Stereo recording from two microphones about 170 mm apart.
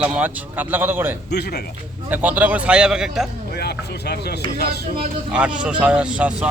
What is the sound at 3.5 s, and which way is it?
Speech, 70° left (ahead or behind).